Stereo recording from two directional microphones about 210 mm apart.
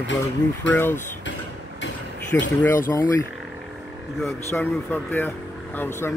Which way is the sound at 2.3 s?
10° left (ahead or behind).